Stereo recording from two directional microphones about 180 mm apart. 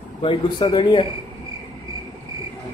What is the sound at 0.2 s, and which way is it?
Speech, 30° left (ahead or behind).